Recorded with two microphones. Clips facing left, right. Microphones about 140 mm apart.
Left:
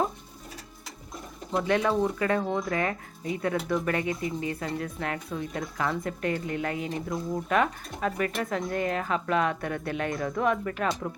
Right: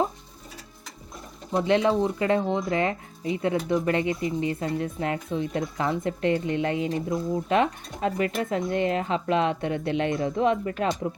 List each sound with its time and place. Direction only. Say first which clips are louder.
1.5 s speech: right 3 dB; 25° right (ahead or behind)